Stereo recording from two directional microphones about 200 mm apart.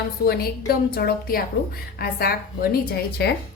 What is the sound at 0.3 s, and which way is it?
A woman's voice, 50° left (ahead or behind).